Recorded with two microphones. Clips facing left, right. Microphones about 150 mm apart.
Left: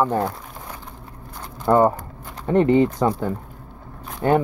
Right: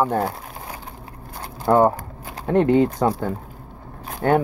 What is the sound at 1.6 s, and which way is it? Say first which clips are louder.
Speech: even; 10° right (ahead or behind).